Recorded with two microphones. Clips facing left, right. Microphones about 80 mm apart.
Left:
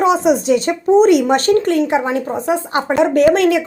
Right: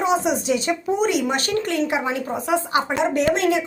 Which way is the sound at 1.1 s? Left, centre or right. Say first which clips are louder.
Left 10 dB; left.